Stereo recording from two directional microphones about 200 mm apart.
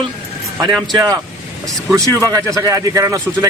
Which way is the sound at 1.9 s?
15° right (ahead or behind).